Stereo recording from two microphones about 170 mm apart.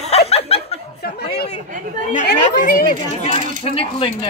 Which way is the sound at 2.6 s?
55° left (ahead or behind).